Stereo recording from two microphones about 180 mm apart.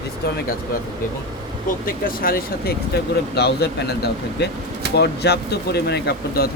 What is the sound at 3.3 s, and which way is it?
Speech, 65° left (ahead or behind).